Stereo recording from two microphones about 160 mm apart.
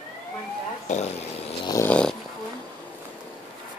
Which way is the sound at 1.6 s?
20° left (ahead or behind).